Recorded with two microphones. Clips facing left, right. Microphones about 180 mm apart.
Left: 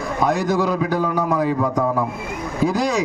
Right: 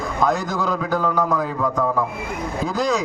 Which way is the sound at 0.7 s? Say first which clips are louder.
Left 1 dB; 10° left (ahead or behind).